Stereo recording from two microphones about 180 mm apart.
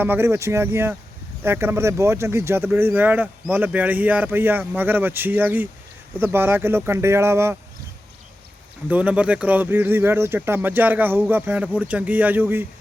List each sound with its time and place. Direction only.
0.0 s speech: 10° right (ahead or behind)
8.9 s speech: 10° right (ahead or behind)